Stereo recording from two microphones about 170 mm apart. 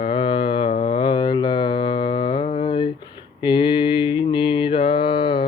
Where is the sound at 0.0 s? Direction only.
30° left (ahead or behind).